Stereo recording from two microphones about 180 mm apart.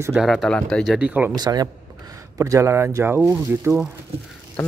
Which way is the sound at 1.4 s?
20° right (ahead or behind).